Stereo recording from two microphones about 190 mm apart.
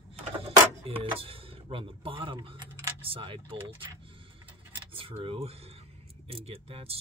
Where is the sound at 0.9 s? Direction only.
30° right (ahead or behind).